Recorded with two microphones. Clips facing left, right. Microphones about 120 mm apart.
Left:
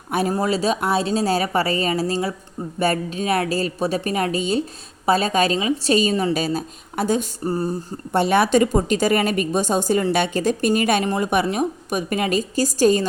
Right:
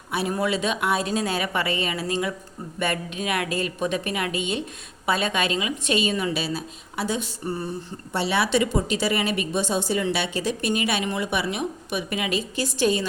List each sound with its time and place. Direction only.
0.1 s a woman's voice: 40° left (ahead or behind)